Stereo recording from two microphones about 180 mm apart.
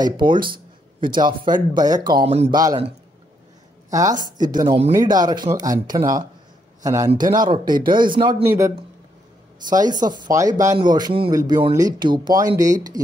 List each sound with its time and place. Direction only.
0.0 s speech: 25° right (ahead or behind)
2.2 s speech: 35° right (ahead or behind)
2.5 s speech: 20° right (ahead or behind)
3.9 s speech: 20° right (ahead or behind)
4.6 s speech: 35° right (ahead or behind)
4.9 s a man's voice: 20° right (ahead or behind)
8.5 s a man's voice: 15° right (ahead or behind)
9.8 s speech: 20° right (ahead or behind)